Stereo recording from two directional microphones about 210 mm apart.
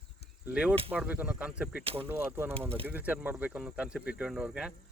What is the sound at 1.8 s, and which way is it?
Speech, 25° right (ahead or behind).